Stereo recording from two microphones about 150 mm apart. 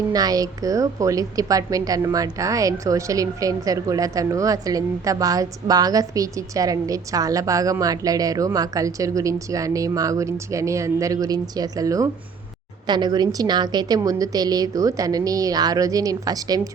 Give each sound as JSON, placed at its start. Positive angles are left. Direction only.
{"t": 0.1, "sound": "a woman's voice", "side_deg": -25}